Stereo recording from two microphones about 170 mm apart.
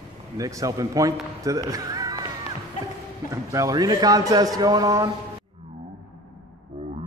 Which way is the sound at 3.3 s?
20° right (ahead or behind).